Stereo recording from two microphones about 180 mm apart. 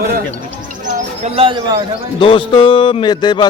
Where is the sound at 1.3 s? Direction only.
30° right (ahead or behind).